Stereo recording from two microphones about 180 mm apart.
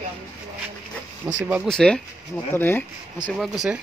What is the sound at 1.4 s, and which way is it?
Speech, 10° right (ahead or behind).